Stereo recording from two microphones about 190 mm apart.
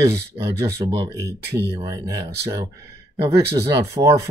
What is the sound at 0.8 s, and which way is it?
Speech, 20° right (ahead or behind).